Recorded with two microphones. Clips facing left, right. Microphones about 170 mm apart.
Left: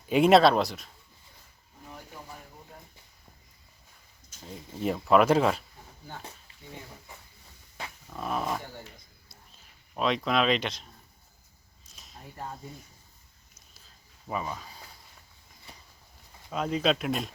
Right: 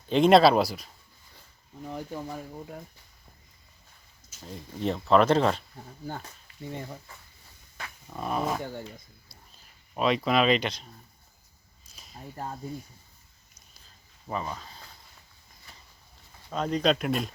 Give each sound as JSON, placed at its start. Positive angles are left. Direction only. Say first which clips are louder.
{"t": 0.1, "sound": "speech", "louder": "right 1 dB", "side_deg": 5}
{"t": 4.3, "sound": "speech", "louder": "right 1 dB", "side_deg": 0}
{"t": 8.1, "sound": "speech", "louder": "right 2 dB", "side_deg": 0}
{"t": 9.9, "sound": "speech", "louder": "right 2 dB", "side_deg": 0}
{"t": 11.9, "sound": "a sound", "louder": "right 3 dB", "side_deg": 0}
{"t": 14.3, "sound": "speech", "louder": "even", "side_deg": 5}
{"t": 16.5, "sound": "speech", "louder": "right 1 dB", "side_deg": 5}